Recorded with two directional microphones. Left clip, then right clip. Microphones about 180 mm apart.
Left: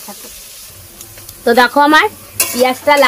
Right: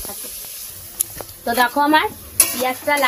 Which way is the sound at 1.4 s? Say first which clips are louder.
Left 8 dB; 60° left (ahead or behind).